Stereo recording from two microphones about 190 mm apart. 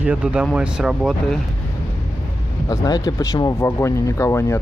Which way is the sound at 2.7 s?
20° left (ahead or behind).